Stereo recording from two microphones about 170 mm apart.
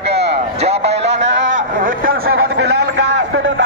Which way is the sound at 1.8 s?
60° right (ahead or behind).